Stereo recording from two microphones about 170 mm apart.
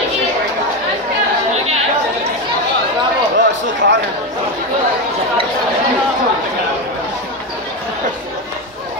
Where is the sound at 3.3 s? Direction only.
90° right.